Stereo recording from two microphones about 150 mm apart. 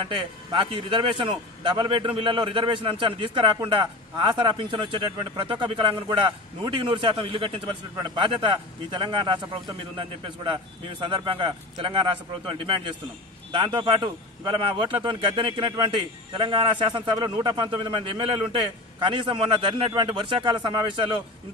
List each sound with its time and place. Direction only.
0.0 s a man's voice: 35° right (ahead or behind)